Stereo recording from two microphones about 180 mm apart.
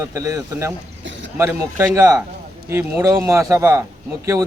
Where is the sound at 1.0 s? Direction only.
90° right.